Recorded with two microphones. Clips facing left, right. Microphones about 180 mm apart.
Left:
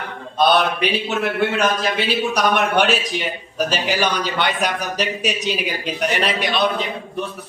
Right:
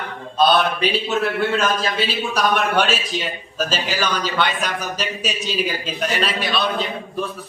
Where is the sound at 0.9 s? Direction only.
15° left (ahead or behind).